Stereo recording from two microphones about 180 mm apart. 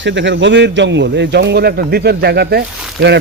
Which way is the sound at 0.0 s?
80° right.